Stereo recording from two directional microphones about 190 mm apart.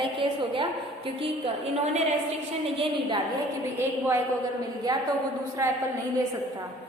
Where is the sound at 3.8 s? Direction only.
10° right (ahead or behind).